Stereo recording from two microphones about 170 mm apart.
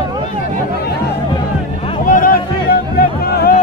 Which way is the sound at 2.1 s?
55° left (ahead or behind).